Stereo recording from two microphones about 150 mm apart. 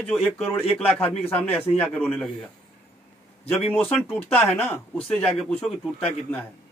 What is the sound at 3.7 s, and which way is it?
A man's voice, 10° left (ahead or behind).